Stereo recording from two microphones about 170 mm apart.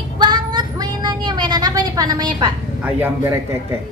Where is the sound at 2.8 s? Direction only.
10° right (ahead or behind).